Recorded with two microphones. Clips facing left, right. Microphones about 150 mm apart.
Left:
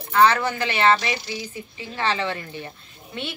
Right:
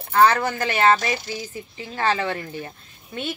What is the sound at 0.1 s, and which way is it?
A woman's voice, 45° right (ahead or behind).